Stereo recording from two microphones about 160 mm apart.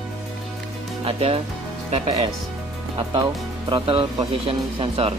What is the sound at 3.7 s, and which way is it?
Speech, 35° right (ahead or behind).